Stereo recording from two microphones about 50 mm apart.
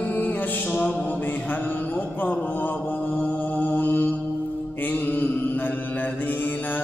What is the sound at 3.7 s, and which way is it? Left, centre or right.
Mantra, left.